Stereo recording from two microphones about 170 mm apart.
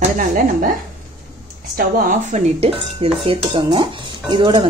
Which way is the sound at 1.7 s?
55° right (ahead or behind).